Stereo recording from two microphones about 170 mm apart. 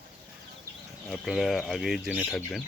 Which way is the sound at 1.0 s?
Centre (ahead or behind).